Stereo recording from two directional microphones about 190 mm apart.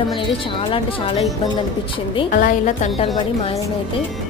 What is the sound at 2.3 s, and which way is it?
Speech, 45° left (ahead or behind).